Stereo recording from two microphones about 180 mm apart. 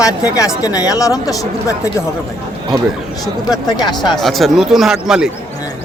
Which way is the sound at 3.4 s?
25° left (ahead or behind).